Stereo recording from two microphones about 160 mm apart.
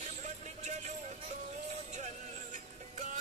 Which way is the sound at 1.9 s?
45° right (ahead or behind).